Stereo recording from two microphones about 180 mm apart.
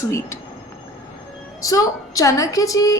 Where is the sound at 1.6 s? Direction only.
20° left (ahead or behind).